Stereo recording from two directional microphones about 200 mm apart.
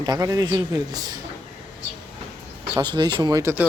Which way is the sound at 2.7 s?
20° right (ahead or behind).